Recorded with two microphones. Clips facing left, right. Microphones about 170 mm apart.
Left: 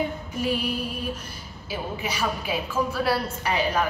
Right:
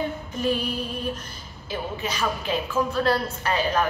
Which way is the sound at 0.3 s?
10° left (ahead or behind).